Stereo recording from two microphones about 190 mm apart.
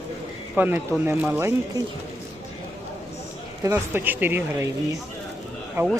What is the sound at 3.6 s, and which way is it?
Speech, 15° right (ahead or behind).